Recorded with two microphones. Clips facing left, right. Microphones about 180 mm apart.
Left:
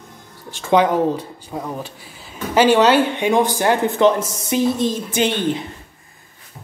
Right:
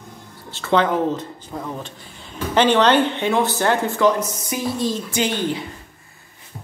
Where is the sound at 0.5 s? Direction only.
15° left (ahead or behind).